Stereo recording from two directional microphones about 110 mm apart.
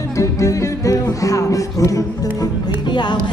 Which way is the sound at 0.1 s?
30° left (ahead or behind).